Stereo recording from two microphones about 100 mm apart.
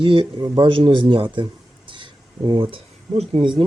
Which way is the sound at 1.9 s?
50° right (ahead or behind).